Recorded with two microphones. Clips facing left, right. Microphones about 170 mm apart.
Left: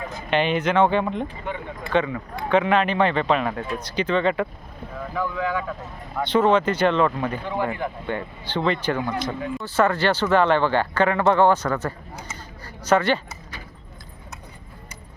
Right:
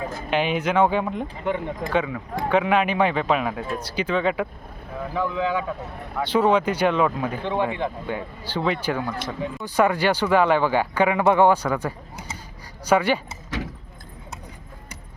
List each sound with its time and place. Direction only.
0.3 s speech: 5° right (ahead or behind)
5.1 s speech: 20° right (ahead or behind)
6.1 s speech: 10° right (ahead or behind)
7.4 s speech: 20° right (ahead or behind)
8.0 s speech: 5° right (ahead or behind)